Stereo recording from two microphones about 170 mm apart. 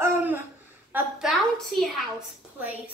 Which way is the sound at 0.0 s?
10° right (ahead or behind).